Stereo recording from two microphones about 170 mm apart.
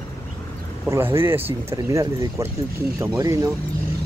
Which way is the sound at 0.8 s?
15° right (ahead or behind).